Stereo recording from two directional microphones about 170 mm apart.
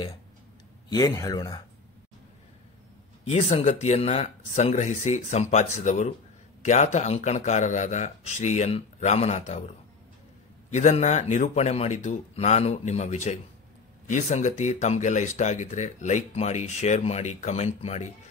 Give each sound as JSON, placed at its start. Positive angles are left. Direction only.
{"t": 0.8, "sound": "speech", "side_deg": 20}
{"t": 3.3, "sound": "a man's voice", "side_deg": 40}
{"t": 10.7, "sound": "a man's voice", "side_deg": 40}